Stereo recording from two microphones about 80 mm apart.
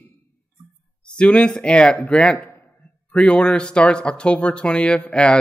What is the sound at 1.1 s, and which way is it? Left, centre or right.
Speech, centre.